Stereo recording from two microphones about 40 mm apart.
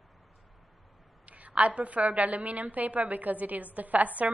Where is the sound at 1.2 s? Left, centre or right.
Right.